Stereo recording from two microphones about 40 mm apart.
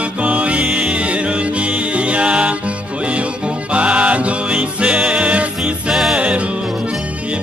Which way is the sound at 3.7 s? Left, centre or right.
Right.